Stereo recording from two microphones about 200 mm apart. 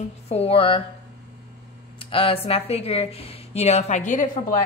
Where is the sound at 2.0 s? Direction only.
25° left (ahead or behind).